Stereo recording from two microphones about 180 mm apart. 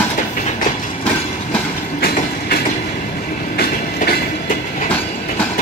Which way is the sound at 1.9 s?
60° left (ahead or behind).